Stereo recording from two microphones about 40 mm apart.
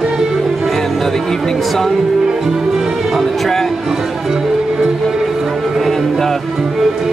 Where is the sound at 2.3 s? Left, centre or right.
Centre.